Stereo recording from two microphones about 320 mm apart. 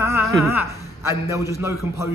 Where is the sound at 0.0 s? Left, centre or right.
Centre.